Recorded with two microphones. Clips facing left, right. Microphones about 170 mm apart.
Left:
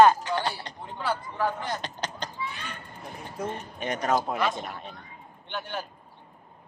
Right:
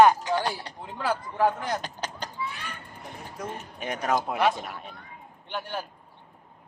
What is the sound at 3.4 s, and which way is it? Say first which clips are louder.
Speech: left 3 dB; 30° left (ahead or behind).